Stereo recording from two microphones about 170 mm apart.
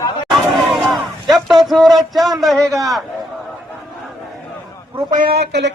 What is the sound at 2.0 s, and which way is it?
Speech, centre (ahead or behind).